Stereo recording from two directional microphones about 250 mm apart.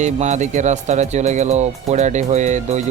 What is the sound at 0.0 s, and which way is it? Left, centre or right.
Speech, right.